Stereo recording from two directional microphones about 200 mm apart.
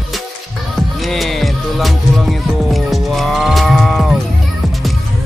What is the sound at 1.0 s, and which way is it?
Music, centre (ahead or behind).